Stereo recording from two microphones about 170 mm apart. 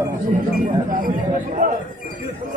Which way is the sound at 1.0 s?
50° right (ahead or behind).